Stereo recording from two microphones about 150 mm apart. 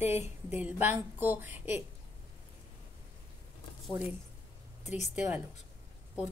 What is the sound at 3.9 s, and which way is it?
Speech, 35° left (ahead or behind).